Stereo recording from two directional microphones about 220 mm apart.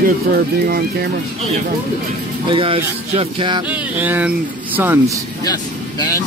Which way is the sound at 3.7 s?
5° right (ahead or behind).